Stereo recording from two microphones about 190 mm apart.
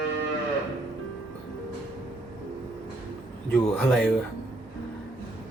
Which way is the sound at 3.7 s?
5° left (ahead or behind).